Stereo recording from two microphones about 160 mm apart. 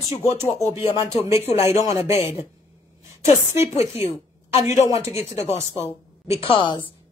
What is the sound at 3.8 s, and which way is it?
A woman's voice, 40° left (ahead or behind).